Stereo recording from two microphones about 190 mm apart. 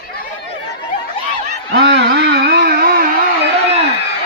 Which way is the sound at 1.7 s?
60° right (ahead or behind).